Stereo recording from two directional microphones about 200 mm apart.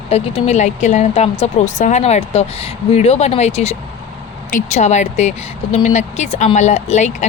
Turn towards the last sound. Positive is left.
turn(degrees=35)  # may be behind; listen again after turning